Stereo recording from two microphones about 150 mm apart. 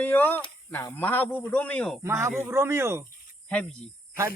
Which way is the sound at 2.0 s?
20° right (ahead or behind).